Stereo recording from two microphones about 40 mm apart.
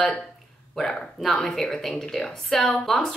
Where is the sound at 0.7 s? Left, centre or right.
Centre.